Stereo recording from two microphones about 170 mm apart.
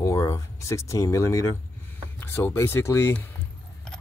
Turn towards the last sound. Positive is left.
turn(degrees=15)  # may be behind; listen again after turning